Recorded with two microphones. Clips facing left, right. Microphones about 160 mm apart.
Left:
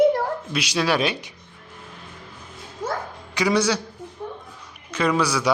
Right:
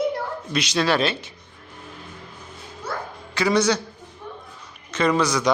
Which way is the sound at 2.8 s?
45° left (ahead or behind).